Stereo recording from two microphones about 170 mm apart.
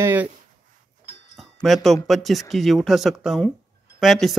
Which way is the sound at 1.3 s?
Centre (ahead or behind).